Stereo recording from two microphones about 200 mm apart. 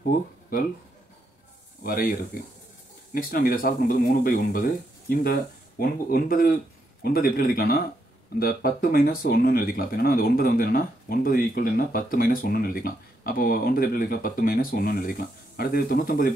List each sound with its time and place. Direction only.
1.8 s speech: 45° left (ahead or behind)
3.2 s speech: 45° left (ahead or behind)